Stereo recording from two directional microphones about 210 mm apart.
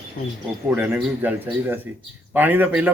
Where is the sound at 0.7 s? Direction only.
10° right (ahead or behind).